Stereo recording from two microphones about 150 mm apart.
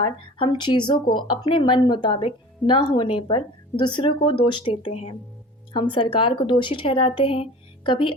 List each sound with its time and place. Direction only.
0.0 s speech: 35° left (ahead or behind)